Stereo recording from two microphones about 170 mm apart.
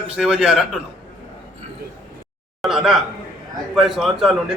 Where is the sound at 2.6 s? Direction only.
Centre (ahead or behind).